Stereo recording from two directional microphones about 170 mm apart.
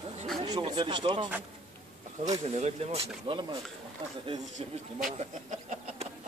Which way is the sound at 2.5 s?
40° right (ahead or behind).